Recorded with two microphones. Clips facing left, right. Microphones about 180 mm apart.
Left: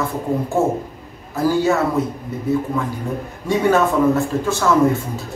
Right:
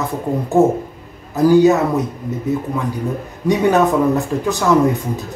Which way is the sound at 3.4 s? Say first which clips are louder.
Right 2 dB; 15° right (ahead or behind).